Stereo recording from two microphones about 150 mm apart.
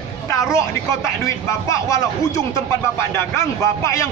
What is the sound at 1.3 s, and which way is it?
A man's voice, 20° left (ahead or behind).